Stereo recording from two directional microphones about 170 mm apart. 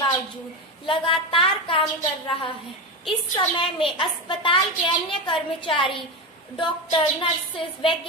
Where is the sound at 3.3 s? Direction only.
30° left (ahead or behind).